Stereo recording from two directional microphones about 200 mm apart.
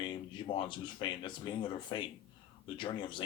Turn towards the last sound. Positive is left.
turn(degrees=25)  # may be behind; listen again after turning